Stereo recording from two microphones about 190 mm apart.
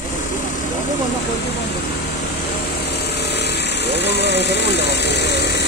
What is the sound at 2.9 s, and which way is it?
Vehicle, 60° left (ahead or behind).